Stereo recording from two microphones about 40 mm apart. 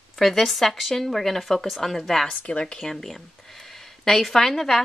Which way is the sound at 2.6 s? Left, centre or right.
Centre.